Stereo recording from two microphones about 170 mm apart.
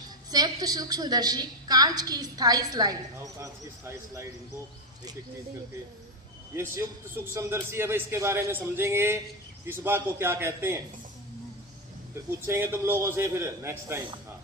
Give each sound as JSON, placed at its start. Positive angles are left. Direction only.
{"t": 0.3, "sound": "a woman's voice", "side_deg": -20}
{"t": 6.6, "sound": "a man's voice", "side_deg": -20}
{"t": 12.5, "sound": "a man's voice", "side_deg": -15}